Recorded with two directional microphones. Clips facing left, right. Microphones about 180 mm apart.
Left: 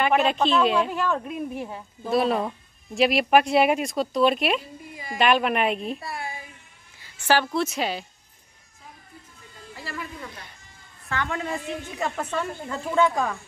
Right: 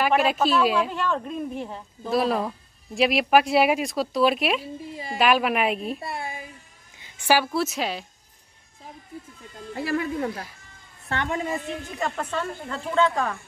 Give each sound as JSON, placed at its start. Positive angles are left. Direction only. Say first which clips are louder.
{"t": 0.0, "sound": "speech", "louder": "even", "side_deg": -5}
{"t": 0.9, "sound": "speech", "louder": "left 1 dB", "side_deg": 5}
{"t": 5.9, "sound": "a woman's voice", "louder": "right 2 dB", "side_deg": -25}
{"t": 9.8, "sound": "speech", "louder": "right 11 dB", "side_deg": -60}
{"t": 11.9, "sound": "speech", "louder": "even", "side_deg": 5}